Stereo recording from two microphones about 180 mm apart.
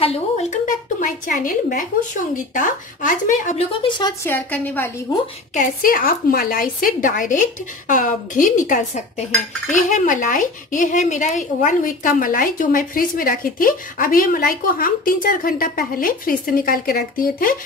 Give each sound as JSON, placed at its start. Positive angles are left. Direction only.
{"t": 0.0, "sound": "a woman's voice", "side_deg": 35}
{"t": 4.2, "sound": "a woman's voice", "side_deg": 10}
{"t": 5.5, "sound": "a woman's voice", "side_deg": 50}